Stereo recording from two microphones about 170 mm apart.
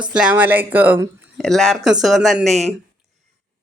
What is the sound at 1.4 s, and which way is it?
Speech, centre (ahead or behind).